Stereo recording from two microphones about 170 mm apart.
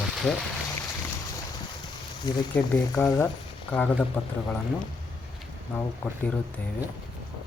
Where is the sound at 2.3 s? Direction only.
25° left (ahead or behind).